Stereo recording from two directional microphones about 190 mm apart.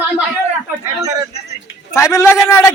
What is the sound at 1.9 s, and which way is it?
Speech, 15° left (ahead or behind).